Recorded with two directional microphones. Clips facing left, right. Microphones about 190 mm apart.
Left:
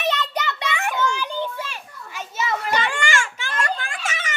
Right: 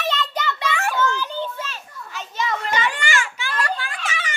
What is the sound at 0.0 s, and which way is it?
Children playing, 15° left (ahead or behind).